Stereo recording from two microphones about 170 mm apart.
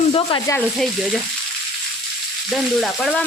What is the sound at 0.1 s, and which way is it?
Speech, 25° left (ahead or behind).